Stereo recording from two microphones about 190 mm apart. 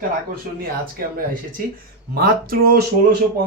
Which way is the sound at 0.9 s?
45° right (ahead or behind).